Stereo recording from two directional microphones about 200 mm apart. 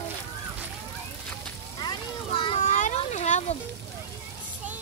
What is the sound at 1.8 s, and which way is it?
Vehicle, 25° left (ahead or behind).